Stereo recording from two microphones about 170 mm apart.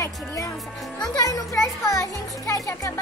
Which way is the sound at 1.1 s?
20° left (ahead or behind).